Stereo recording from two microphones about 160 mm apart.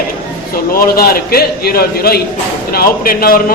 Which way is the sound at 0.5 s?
70° left (ahead or behind).